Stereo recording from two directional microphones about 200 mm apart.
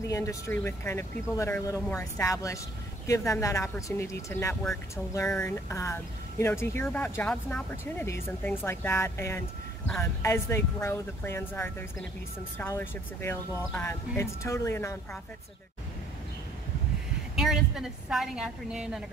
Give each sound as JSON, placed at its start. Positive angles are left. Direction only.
{"t": 0.0, "sound": "speech", "side_deg": 15}
{"t": 17.4, "sound": "a woman's voice", "side_deg": 0}